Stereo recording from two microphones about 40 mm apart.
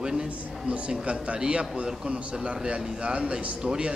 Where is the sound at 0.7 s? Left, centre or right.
Right.